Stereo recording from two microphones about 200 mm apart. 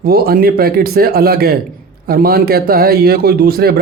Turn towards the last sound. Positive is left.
turn(degrees=-50)  # may be behind; listen again after turning